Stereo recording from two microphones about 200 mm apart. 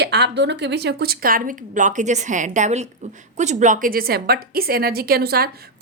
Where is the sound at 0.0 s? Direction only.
55° right (ahead or behind).